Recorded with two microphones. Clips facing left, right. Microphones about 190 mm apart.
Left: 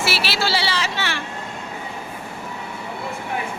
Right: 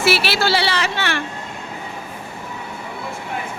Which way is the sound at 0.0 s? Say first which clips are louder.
Right 5 dB; 55° right (ahead or behind).